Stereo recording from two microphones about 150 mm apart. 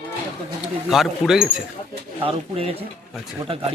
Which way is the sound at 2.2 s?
40° right (ahead or behind).